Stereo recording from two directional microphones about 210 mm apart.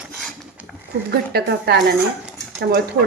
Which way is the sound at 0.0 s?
Centre (ahead or behind).